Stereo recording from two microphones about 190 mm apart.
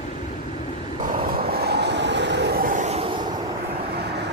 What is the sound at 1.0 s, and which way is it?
Vehicle, 50° right (ahead or behind).